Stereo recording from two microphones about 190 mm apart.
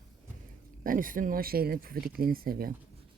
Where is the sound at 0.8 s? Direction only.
45° right (ahead or behind).